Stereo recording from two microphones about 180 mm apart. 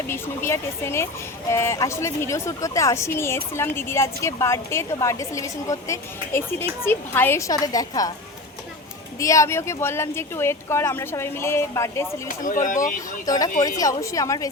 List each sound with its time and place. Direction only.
0.1 s a woman's voice: 15° left (ahead or behind)
9.1 s a woman's voice: 15° left (ahead or behind)
12.3 s speech: 45° left (ahead or behind)
13.2 s a woman's voice: 20° left (ahead or behind)